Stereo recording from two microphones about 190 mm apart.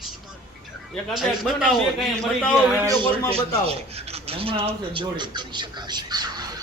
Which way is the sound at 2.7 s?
20° right (ahead or behind).